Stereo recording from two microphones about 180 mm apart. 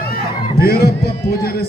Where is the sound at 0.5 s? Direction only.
60° left (ahead or behind).